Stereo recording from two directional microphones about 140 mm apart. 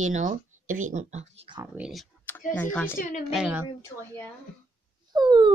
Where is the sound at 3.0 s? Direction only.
70° left (ahead or behind).